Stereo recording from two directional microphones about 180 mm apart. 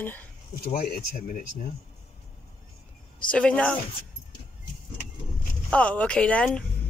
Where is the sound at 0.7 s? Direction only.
55° left (ahead or behind).